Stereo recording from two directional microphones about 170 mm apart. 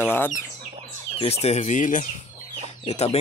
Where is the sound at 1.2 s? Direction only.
35° left (ahead or behind).